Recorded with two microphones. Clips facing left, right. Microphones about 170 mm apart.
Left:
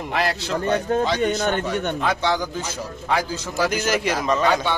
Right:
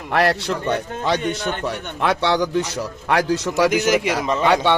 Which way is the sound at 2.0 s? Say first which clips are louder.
Right 8 dB; 65° right (ahead or behind).